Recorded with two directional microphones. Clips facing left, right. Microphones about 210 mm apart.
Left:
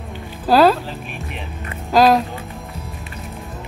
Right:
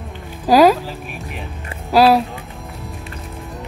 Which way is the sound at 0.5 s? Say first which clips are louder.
Right 2 dB; 10° right (ahead or behind).